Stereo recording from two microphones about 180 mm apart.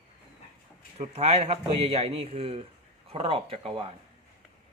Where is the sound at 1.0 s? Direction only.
40° right (ahead or behind).